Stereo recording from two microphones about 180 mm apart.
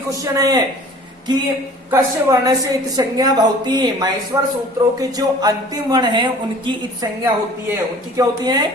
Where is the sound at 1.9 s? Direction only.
20° right (ahead or behind).